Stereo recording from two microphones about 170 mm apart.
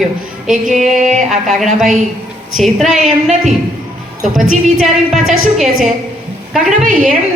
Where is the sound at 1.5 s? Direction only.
Centre (ahead or behind).